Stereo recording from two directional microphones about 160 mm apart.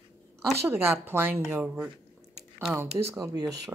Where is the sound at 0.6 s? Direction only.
15° right (ahead or behind).